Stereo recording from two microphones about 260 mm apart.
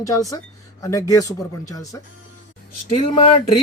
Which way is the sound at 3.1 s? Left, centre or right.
Left.